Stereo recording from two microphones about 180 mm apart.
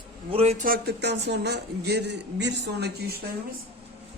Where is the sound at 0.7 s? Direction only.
65° right (ahead or behind).